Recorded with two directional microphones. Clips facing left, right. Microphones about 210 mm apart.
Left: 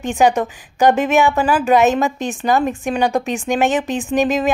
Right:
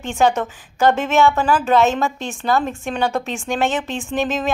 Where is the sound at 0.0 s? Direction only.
15° left (ahead or behind).